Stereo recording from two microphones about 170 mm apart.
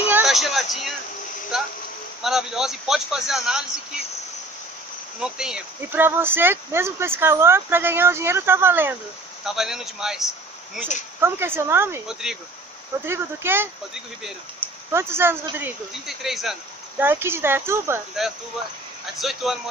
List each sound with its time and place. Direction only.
0.1 s a sound: centre (ahead or behind)
2.2 s speech: centre (ahead or behind)
5.2 s speech: 5° right (ahead or behind)
9.4 s speech: centre (ahead or behind)
11.1 s speech: 15° right (ahead or behind)
12.1 s speech: 5° right (ahead or behind)
13.0 s speech: 15° right (ahead or behind)
14.9 s speech: 15° right (ahead or behind)
17.0 s speech: 15° right (ahead or behind)
19.1 s speech: centre (ahead or behind)